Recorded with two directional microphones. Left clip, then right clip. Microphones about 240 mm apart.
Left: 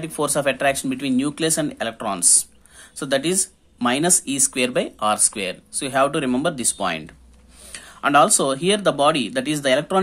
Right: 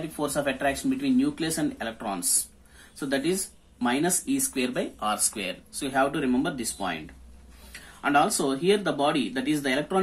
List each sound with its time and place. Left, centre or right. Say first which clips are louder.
0.1 s speech: left 8 dB; left
8.0 s speech: left 7 dB; left